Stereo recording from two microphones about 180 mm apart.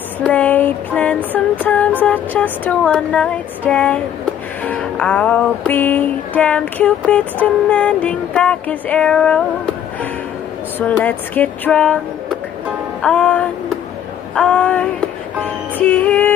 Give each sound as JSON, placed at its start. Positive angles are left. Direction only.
{"t": 0.2, "sound": "music", "side_deg": 10}
{"t": 10.8, "sound": "music", "side_deg": 10}
{"t": 13.0, "sound": "music", "side_deg": 10}
{"t": 14.3, "sound": "a sound", "side_deg": 5}
{"t": 15.8, "sound": "music", "side_deg": 5}